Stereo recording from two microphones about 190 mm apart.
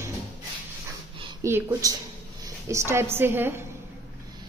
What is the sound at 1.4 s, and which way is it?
A woman's voice, 15° right (ahead or behind).